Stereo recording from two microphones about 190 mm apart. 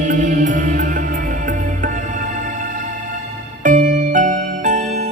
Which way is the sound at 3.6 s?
45° right (ahead or behind).